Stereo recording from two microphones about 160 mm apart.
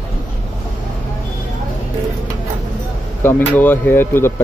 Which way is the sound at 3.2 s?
15° left (ahead or behind).